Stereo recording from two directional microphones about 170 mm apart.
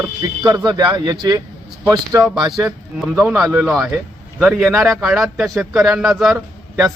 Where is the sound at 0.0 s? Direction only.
25° right (ahead or behind).